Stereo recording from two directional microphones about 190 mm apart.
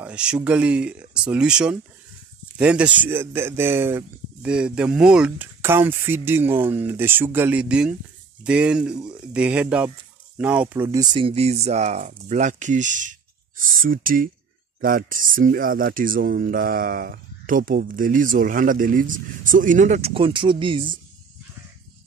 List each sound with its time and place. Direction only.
0.0 s speech: 5° right (ahead or behind)
11.1 s speech: 30° right (ahead or behind)